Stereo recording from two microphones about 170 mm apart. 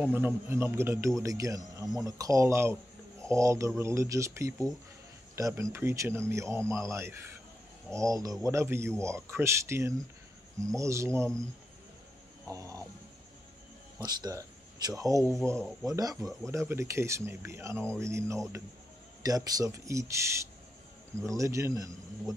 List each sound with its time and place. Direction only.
0.0 s speech: 10° right (ahead or behind)
12.4 s speech: 20° right (ahead or behind)
13.9 s speech: 25° right (ahead or behind)